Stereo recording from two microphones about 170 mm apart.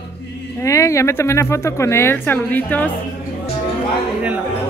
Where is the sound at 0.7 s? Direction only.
20° left (ahead or behind).